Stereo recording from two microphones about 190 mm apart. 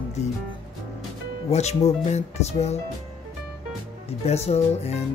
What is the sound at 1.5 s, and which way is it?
Speech, 35° left (ahead or behind).